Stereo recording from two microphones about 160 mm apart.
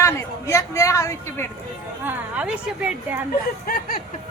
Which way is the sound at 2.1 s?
10° right (ahead or behind).